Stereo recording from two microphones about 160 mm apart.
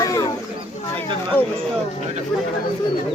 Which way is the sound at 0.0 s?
20° left (ahead or behind).